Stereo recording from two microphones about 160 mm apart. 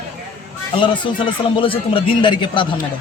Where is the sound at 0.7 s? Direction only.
30° left (ahead or behind).